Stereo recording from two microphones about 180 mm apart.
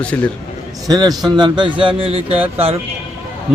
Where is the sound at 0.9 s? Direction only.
20° right (ahead or behind).